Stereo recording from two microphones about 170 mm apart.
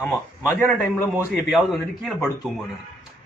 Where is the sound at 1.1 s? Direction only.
Centre (ahead or behind).